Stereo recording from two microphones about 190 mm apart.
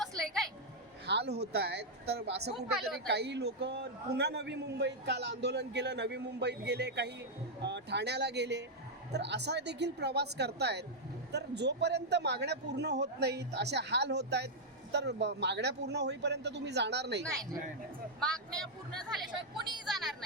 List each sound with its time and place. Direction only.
0.2 s a sound: 5° left (ahead or behind)
1.0 s a man's voice: 60° right (ahead or behind)
18.2 s speech: centre (ahead or behind)